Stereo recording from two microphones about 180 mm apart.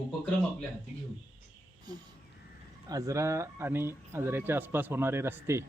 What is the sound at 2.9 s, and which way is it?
Speech, 15° right (ahead or behind).